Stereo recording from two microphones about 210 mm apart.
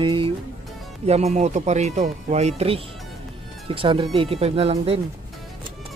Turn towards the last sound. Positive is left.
turn(degrees=-30)  # may be behind; listen again after turning